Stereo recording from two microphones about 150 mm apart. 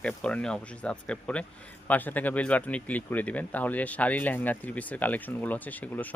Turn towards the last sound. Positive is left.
turn(degrees=10)  # may be behind; listen again after turning